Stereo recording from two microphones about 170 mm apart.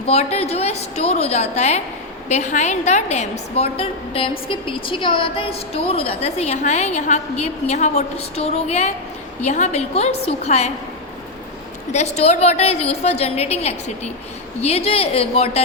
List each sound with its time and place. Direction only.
0.0 s a woman's voice: 40° left (ahead or behind)
11.9 s a woman's voice: 40° left (ahead or behind)